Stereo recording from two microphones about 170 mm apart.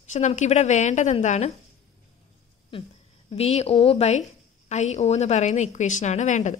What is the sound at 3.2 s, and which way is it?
A woman's voice, 35° left (ahead or behind).